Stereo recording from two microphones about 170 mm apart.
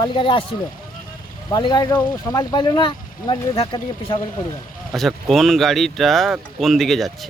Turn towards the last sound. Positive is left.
turn(degrees=0)  # may be behind; listen again after turning